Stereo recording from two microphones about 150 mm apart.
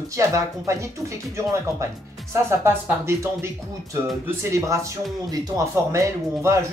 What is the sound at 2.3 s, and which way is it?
Speech, 20° right (ahead or behind).